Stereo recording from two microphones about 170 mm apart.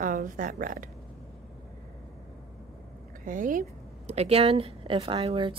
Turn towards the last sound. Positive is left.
turn(degrees=-35)  # may be behind; listen again after turning